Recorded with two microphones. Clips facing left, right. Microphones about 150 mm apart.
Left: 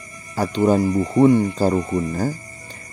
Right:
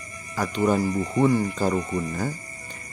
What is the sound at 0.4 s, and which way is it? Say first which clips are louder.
Speech: left 5 dB; 30° left (ahead or behind).